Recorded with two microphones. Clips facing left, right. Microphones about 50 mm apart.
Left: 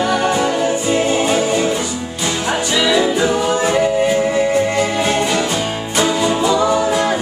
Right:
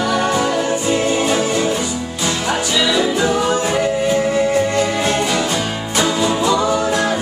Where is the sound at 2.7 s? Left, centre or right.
Centre.